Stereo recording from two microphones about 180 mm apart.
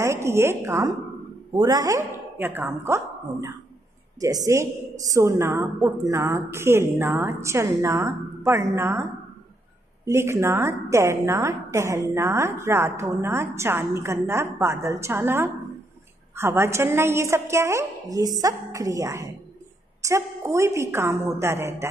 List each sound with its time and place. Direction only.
0.0 s a woman's voice: 15° right (ahead or behind)
10.0 s a woman's voice: 15° right (ahead or behind)